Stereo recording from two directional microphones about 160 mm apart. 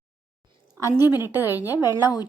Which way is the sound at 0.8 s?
20° right (ahead or behind).